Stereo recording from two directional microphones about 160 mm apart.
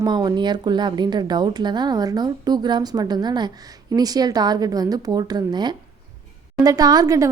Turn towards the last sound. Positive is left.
turn(degrees=-20)  # may be behind; listen again after turning